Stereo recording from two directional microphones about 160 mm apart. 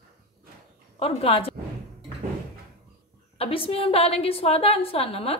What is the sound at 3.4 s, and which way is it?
A woman's voice, 35° left (ahead or behind).